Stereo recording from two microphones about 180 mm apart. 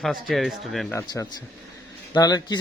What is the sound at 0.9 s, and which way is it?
A man's voice, 15° left (ahead or behind).